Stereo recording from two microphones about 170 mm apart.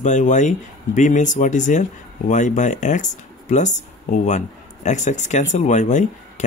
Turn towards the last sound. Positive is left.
turn(degrees=45)  # may be behind; listen again after turning